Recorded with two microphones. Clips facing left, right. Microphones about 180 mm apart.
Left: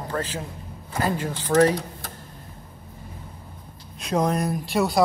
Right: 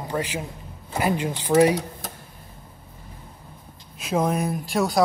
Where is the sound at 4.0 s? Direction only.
5° right (ahead or behind).